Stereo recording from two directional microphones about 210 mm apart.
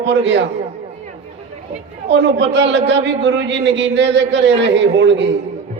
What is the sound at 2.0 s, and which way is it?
A man's voice, 55° right (ahead or behind).